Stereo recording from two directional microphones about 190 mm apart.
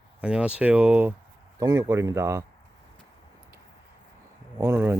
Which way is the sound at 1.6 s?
20° right (ahead or behind).